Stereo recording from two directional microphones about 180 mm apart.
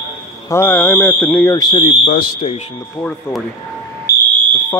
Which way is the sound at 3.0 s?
5° left (ahead or behind).